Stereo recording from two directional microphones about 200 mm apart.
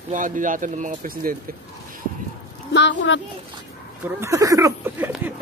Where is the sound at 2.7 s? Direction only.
65° left (ahead or behind).